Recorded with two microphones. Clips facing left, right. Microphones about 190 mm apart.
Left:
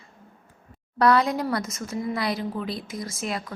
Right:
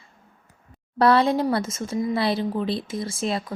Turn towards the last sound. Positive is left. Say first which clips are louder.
# right 4 dB
turn(degrees=-30)  # may be behind; listen again after turning